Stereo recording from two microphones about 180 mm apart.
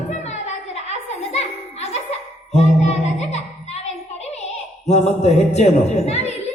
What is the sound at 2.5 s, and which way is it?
Music, 35° left (ahead or behind).